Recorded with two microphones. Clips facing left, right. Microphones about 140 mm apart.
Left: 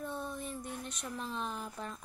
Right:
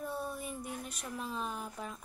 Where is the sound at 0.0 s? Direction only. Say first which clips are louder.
Right 1 dB; 10° right (ahead or behind).